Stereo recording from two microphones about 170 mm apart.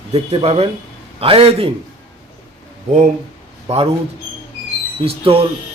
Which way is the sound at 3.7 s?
35° right (ahead or behind).